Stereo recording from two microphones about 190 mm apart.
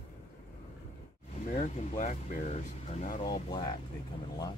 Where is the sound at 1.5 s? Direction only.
35° left (ahead or behind).